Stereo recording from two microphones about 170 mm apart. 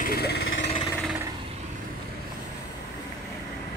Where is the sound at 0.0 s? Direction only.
65° left (ahead or behind).